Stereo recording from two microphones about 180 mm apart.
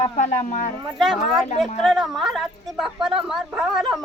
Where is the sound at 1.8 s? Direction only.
Centre (ahead or behind).